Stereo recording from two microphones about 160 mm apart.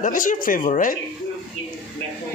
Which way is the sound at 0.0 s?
55° left (ahead or behind).